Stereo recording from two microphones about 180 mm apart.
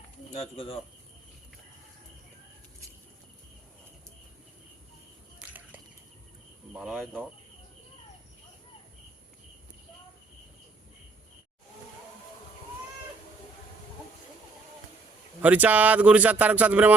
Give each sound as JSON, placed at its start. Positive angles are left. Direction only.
{"t": 0.3, "sound": "speech", "side_deg": 30}
{"t": 5.4, "sound": "a sound", "side_deg": -10}
{"t": 6.7, "sound": "speech", "side_deg": -5}
{"t": 15.4, "sound": "speech", "side_deg": -10}